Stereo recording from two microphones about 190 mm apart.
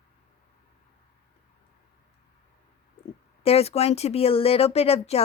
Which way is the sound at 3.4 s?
30° left (ahead or behind).